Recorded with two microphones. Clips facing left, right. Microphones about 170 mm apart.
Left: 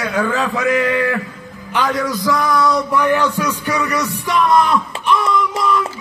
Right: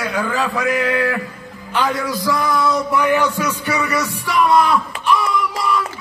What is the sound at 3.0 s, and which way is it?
Speech, 15° right (ahead or behind).